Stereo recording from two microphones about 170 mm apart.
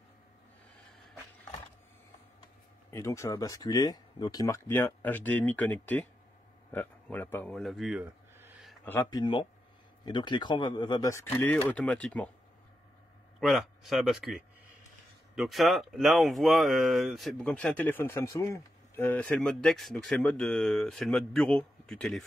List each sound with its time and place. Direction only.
2.9 s speech: 15° left (ahead or behind); by 8.5 s 10° right (ahead or behind)
9.1 s speech: 30° left (ahead or behind)
11.3 s speech: 10° left (ahead or behind)
13.4 s speech: centre (ahead or behind)